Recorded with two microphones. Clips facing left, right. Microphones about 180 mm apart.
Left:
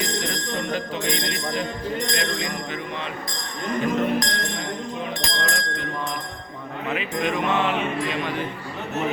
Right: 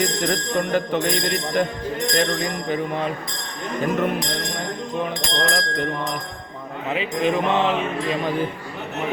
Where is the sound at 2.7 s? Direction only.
45° right (ahead or behind).